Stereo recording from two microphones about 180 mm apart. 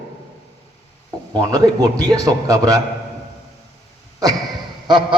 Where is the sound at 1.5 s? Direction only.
20° right (ahead or behind).